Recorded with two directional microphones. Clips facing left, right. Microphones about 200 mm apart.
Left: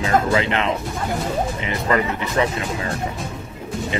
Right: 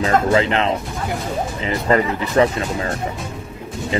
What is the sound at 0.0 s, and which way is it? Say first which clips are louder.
Speech: right 2 dB; 30° right (ahead or behind).